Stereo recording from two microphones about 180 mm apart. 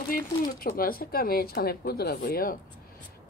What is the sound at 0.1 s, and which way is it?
Speech, 50° left (ahead or behind).